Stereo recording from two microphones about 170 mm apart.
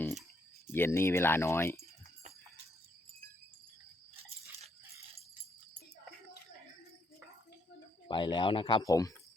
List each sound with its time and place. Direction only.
0.7 s speech: 15° left (ahead or behind)
8.0 s speech: 30° left (ahead or behind)
8.8 s speech: 20° left (ahead or behind)